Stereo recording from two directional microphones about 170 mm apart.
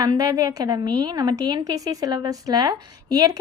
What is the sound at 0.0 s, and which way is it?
A woman's voice, 20° right (ahead or behind).